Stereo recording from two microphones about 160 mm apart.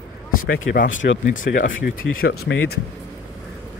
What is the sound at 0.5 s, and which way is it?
Speech, 90° left.